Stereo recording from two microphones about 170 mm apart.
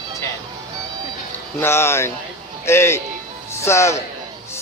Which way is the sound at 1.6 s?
15° left (ahead or behind).